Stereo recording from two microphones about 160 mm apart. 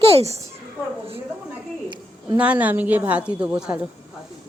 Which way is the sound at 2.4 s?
10° right (ahead or behind).